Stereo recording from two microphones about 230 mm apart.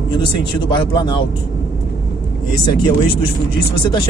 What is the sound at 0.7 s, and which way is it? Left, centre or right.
Speech, centre.